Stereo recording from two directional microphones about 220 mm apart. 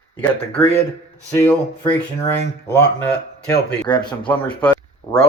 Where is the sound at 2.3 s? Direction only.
50° left (ahead or behind).